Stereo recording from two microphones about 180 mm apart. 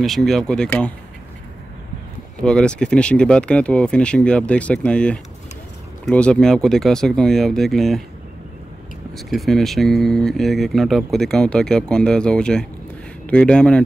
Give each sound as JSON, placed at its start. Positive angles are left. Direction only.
{"t": 0.0, "sound": "speech", "side_deg": 0}
{"t": 2.4, "sound": "speech", "side_deg": 5}
{"t": 9.1, "sound": "speech", "side_deg": 0}